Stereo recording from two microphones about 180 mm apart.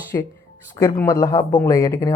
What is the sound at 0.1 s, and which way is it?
Speech, 15° left (ahead or behind).